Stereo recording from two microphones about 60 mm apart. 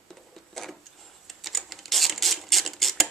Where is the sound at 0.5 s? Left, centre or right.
Centre.